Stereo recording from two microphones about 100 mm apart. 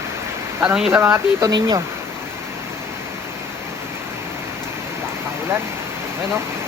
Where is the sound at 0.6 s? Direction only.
10° right (ahead or behind).